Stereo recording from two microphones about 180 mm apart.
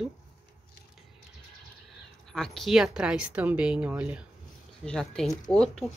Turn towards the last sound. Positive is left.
turn(degrees=0)  # may be behind; listen again after turning